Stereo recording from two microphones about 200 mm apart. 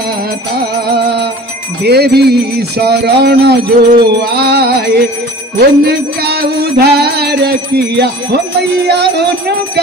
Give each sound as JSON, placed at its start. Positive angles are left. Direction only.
{"t": 0.6, "sound": "music", "side_deg": -55}